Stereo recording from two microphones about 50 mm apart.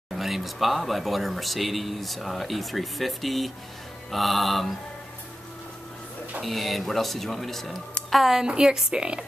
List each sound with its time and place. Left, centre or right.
0.1 s speech: centre
6.4 s speech: centre